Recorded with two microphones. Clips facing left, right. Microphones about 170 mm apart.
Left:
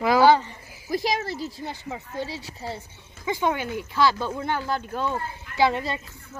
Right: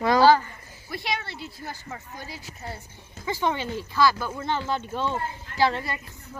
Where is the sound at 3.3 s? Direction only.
15° left (ahead or behind).